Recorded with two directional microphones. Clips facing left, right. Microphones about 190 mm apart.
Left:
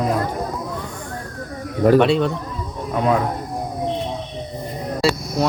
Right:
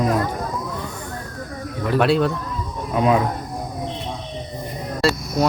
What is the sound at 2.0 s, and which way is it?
A man's voice, centre (ahead or behind).